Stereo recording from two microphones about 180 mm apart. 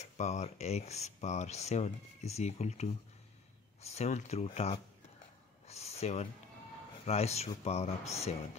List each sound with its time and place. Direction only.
0.0 s speech: 40° left (ahead or behind)